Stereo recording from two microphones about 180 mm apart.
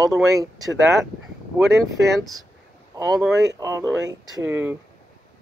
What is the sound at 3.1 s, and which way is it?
Speech, centre (ahead or behind).